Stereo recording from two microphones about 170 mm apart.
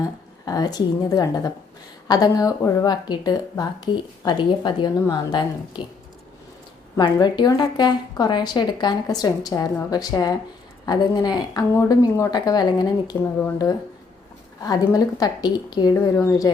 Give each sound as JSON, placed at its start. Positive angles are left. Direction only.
{"t": 0.0, "sound": "a woman's voice", "side_deg": 20}
{"t": 6.9, "sound": "speech", "side_deg": 25}